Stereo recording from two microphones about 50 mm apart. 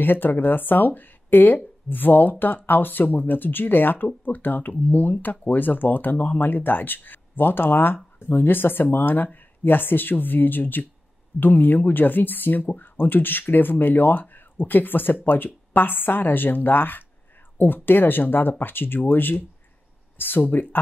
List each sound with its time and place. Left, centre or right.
0.0 s speech: left